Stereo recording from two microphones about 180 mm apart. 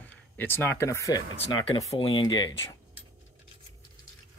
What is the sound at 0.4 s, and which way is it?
Speech, 10° left (ahead or behind).